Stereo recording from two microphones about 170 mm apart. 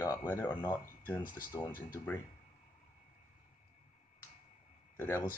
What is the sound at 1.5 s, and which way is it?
Speech, 25° left (ahead or behind).